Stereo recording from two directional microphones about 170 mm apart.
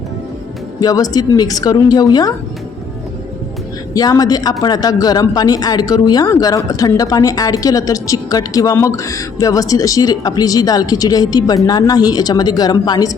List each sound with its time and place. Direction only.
0.8 s speech: 20° left (ahead or behind)
3.9 s speech: 20° left (ahead or behind)